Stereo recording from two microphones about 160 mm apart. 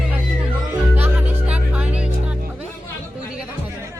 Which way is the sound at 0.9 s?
10° right (ahead or behind).